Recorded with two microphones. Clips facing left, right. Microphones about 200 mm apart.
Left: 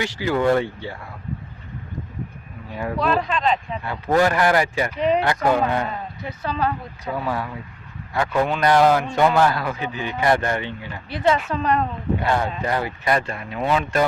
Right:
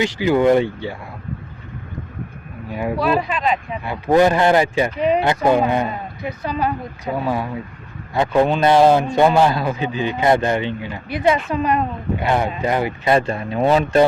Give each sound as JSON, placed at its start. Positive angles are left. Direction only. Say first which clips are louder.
{"t": 0.0, "sound": "speech", "louder": "right 5 dB", "side_deg": -20}
{"t": 2.7, "sound": "speech", "louder": "right 3 dB", "side_deg": -10}
{"t": 4.9, "sound": "speech", "louder": "right 1 dB", "side_deg": -5}
{"t": 5.2, "sound": "a man's voice", "louder": "right 4 dB", "side_deg": -20}